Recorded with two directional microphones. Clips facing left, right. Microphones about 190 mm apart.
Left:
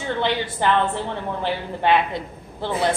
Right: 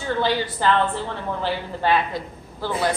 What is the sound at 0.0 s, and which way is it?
A woman's voice, 20° left (ahead or behind).